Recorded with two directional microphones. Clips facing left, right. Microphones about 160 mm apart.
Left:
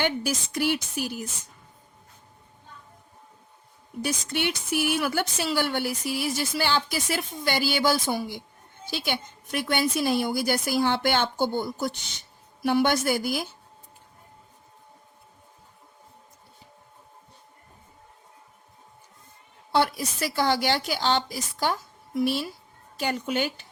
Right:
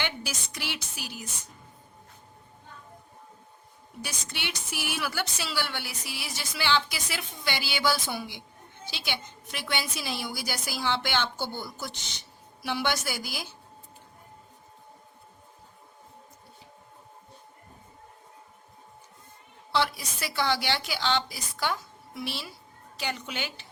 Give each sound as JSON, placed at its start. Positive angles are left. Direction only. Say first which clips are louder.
{"t": 0.0, "sound": "speech", "louder": "left 8 dB", "side_deg": 45}
{"t": 4.0, "sound": "speech", "louder": "left 10 dB", "side_deg": 50}
{"t": 19.7, "sound": "speech", "louder": "left 4 dB", "side_deg": 45}